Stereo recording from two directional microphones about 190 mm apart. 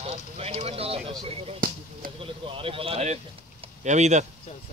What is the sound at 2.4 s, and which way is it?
A man's voice, 30° right (ahead or behind).